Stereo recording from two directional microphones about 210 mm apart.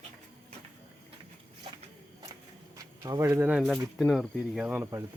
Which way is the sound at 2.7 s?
15° right (ahead or behind).